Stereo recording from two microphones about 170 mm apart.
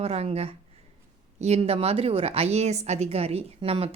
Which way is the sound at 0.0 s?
35° right (ahead or behind).